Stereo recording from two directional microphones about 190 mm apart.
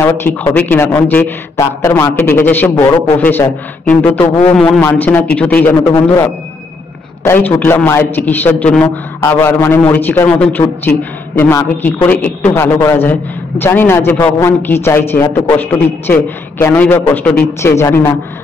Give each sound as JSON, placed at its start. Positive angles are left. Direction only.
{"t": 0.0, "sound": "a man's voice", "side_deg": 10}